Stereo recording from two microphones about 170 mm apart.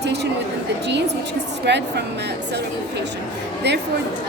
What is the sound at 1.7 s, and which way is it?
Speech, 90° right.